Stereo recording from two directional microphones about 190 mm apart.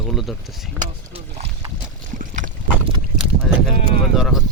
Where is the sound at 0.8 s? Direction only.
35° right (ahead or behind).